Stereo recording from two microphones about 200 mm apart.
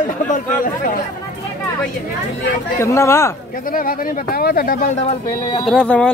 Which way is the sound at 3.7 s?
45° left (ahead or behind).